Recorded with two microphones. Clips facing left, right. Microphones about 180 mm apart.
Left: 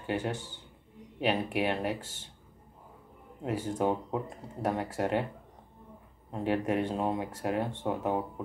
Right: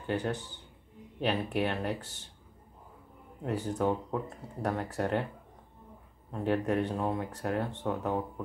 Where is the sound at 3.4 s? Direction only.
10° left (ahead or behind).